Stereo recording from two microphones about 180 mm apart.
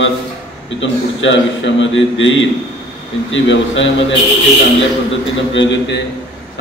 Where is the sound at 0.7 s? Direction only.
90° left.